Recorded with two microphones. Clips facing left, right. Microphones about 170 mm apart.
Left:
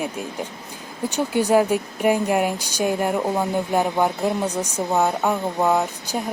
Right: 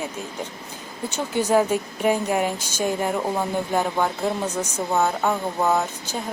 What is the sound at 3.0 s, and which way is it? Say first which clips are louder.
Speech: left 2 dB; centre (ahead or behind).